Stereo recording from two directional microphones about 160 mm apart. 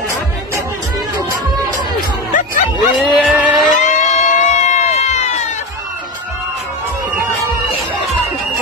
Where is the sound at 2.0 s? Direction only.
55° left (ahead or behind).